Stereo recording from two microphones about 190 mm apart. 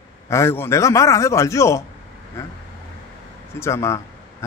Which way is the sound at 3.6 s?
15° left (ahead or behind).